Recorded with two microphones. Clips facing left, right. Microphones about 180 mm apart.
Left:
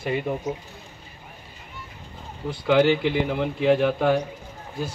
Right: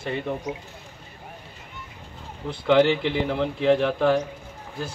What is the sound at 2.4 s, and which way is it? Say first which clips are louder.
Speech: even; 5° left (ahead or behind).